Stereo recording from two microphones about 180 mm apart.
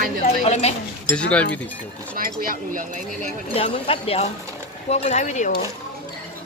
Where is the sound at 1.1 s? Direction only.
5° left (ahead or behind).